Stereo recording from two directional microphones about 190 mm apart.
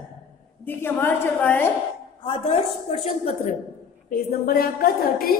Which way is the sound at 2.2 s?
30° left (ahead or behind).